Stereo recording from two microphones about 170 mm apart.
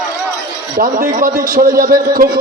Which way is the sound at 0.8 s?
50° right (ahead or behind).